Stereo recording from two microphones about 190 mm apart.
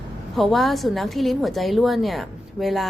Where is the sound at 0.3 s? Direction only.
Centre (ahead or behind).